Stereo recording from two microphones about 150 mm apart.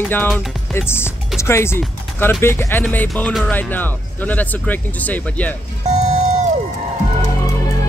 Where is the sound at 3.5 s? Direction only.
10° left (ahead or behind).